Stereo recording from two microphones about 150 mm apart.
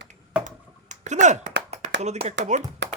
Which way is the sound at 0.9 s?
50° right (ahead or behind).